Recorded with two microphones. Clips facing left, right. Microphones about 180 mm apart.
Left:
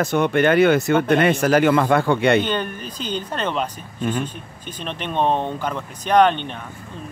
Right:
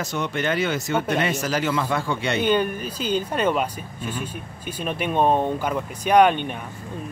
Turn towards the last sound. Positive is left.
turn(degrees=-10)  # may be behind; listen again after turning